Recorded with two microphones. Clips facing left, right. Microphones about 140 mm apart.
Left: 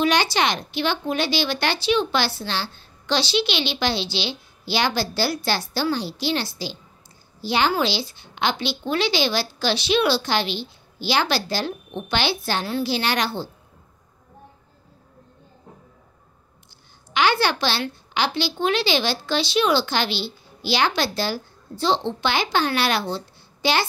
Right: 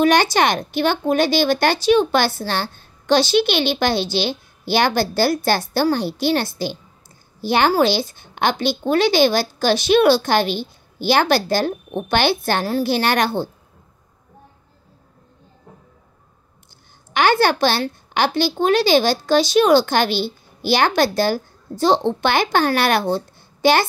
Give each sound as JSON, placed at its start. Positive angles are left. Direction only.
{"t": 0.0, "sound": "speech", "side_deg": -50}
{"t": 17.1, "sound": "speech", "side_deg": -50}